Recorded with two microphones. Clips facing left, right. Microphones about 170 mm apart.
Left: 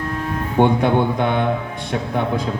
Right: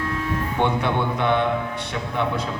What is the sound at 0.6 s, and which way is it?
Music, 40° left (ahead or behind).